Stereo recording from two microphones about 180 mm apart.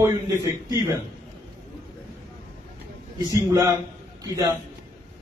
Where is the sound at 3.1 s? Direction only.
20° right (ahead or behind).